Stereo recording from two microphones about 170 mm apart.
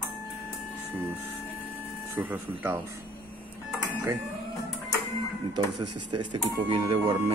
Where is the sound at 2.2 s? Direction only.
10° right (ahead or behind).